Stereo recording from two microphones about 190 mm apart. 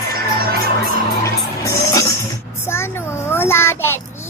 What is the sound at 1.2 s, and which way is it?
Music, 15° left (ahead or behind).